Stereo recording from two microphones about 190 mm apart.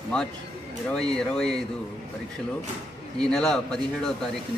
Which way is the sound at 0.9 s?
5° left (ahead or behind).